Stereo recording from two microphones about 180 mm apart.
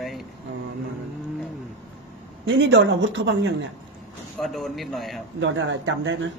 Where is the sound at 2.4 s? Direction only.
85° right.